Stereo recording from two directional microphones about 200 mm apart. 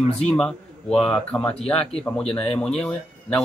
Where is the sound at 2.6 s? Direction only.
Centre (ahead or behind).